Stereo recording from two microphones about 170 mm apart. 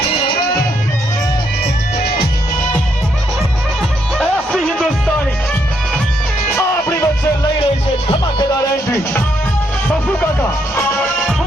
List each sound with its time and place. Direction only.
4.2 s music: 5° left (ahead or behind)
6.6 s music: 15° left (ahead or behind)
8.0 s music: 25° left (ahead or behind)
10.2 s music: 10° left (ahead or behind)